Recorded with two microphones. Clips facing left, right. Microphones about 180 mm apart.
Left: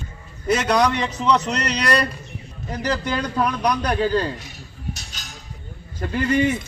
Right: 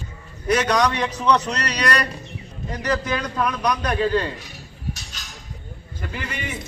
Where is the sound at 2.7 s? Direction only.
30° left (ahead or behind).